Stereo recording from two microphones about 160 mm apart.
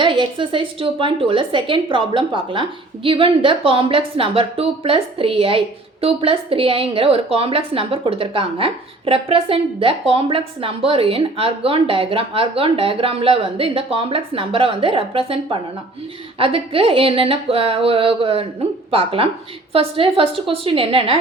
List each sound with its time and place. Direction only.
0.0 s a woman's voice: 30° right (ahead or behind)